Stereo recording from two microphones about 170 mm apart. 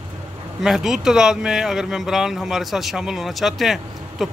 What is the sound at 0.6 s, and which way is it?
Speech, 5° right (ahead or behind).